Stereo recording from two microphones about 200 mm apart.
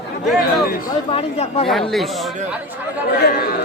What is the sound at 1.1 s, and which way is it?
Speech, 30° left (ahead or behind).